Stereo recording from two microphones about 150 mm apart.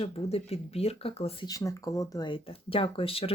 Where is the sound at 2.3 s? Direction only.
35° left (ahead or behind).